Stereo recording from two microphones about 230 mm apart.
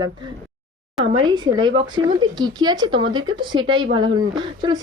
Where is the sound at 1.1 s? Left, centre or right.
Centre.